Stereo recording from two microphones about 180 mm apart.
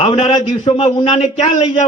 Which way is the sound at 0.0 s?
35° left (ahead or behind).